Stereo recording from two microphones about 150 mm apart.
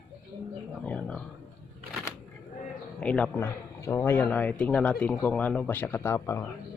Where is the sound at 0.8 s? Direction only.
10° left (ahead or behind).